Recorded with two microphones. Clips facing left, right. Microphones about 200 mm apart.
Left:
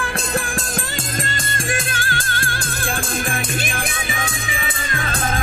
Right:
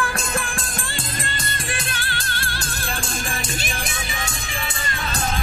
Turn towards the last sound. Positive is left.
turn(degrees=55)  # may be behind; listen again after turning